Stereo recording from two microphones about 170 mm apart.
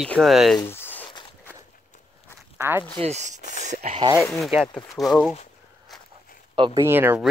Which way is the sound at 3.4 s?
50° left (ahead or behind).